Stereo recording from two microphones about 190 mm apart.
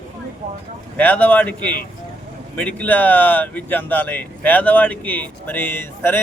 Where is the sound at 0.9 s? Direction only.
10° left (ahead or behind).